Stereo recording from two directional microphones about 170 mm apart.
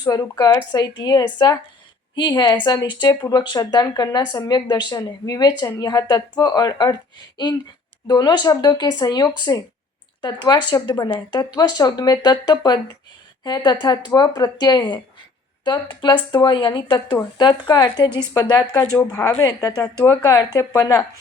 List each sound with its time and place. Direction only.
0.0 s a woman's voice: 20° left (ahead or behind)
8.0 s a woman's voice: 25° left (ahead or behind)